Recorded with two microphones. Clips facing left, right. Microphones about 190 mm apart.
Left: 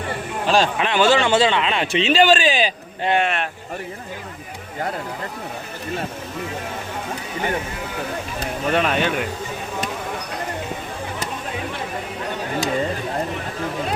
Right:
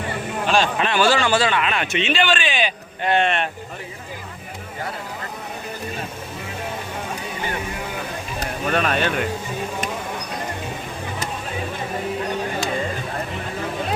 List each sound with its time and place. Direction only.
0.4 s speech: 35° left (ahead or behind)
0.8 s speech: 20° left (ahead or behind); by 3.1 s 35° left (ahead or behind)
3.1 s speech: 5° left (ahead or behind)
8.7 s speech: 15° left (ahead or behind)